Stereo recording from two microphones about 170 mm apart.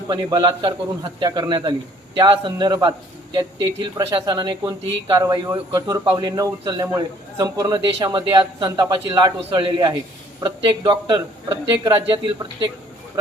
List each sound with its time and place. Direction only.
0.1 s a man's voice: 25° right (ahead or behind)